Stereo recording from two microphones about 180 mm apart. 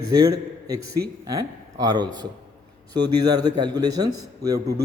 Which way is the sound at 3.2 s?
20° right (ahead or behind).